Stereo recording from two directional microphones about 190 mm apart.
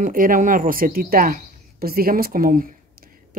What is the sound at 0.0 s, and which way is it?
Speech, 45° right (ahead or behind).